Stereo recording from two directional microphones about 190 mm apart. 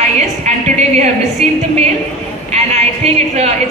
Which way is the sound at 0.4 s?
35° right (ahead or behind).